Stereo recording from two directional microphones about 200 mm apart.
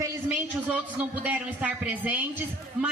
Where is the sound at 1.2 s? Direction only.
5° right (ahead or behind).